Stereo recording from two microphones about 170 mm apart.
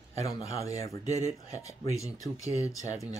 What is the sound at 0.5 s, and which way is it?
Speech, 40° right (ahead or behind).